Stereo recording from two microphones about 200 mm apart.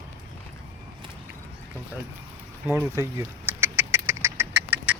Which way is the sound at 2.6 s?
10° right (ahead or behind).